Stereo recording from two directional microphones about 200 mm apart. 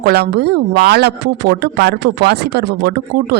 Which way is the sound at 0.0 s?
55° right (ahead or behind).